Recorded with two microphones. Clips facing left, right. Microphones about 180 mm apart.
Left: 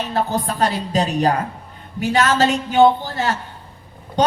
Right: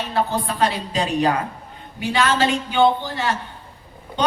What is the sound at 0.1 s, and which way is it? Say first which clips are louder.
A woman's voice: right 1 dB; 40° left (ahead or behind).